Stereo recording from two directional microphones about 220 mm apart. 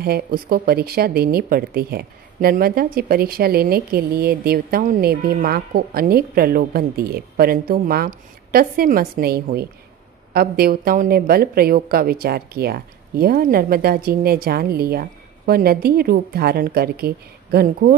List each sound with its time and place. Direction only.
0.0 s speech: 45° right (ahead or behind)